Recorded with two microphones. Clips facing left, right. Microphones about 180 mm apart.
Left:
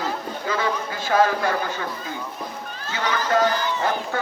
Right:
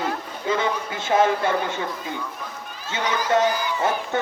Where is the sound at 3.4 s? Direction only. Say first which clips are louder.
Even; 10° right (ahead or behind).